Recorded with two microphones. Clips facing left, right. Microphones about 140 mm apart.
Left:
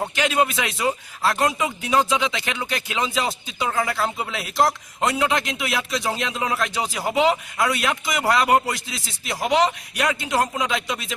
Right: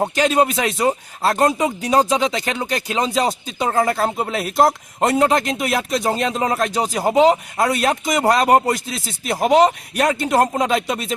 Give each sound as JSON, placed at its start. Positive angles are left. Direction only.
{"t": 0.0, "sound": "speech", "side_deg": -35}